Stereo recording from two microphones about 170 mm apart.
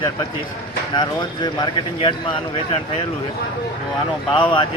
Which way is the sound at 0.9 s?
25° left (ahead or behind).